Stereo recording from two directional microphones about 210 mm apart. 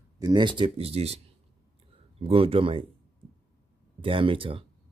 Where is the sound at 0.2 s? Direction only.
20° right (ahead or behind).